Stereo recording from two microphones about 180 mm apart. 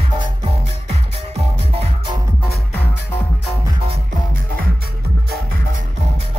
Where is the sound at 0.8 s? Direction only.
35° right (ahead or behind).